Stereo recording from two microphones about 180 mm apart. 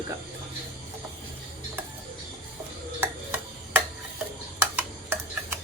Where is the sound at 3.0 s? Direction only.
10° right (ahead or behind).